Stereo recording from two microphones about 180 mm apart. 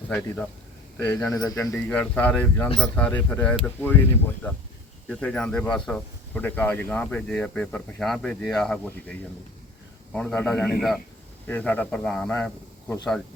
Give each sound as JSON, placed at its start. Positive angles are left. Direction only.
{"t": 0.1, "sound": "a man's voice", "side_deg": 5}
{"t": 1.3, "sound": "speech", "side_deg": 20}
{"t": 1.7, "sound": "speech", "side_deg": 5}
{"t": 5.0, "sound": "a man's voice", "side_deg": 5}